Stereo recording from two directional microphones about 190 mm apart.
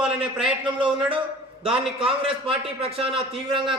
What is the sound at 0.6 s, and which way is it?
A man's voice, 25° right (ahead or behind).